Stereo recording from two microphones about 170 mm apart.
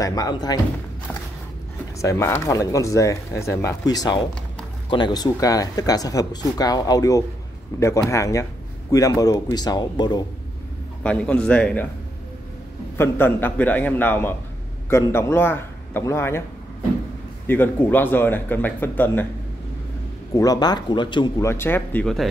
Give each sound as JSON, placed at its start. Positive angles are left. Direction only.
{"t": 0.0, "sound": "speech", "side_deg": 20}
{"t": 2.0, "sound": "speech", "side_deg": 15}
{"t": 11.0, "sound": "speech", "side_deg": 5}
{"t": 12.9, "sound": "speech", "side_deg": 15}
{"t": 17.5, "sound": "speech", "side_deg": 10}
{"t": 20.3, "sound": "speech", "side_deg": 25}
{"t": 21.5, "sound": "speech", "side_deg": 15}